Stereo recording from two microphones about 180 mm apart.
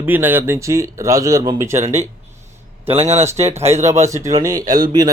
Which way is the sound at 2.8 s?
35° right (ahead or behind).